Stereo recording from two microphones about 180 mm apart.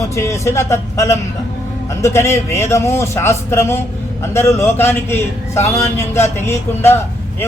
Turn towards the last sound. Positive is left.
turn(degrees=15)  # may be behind; listen again after turning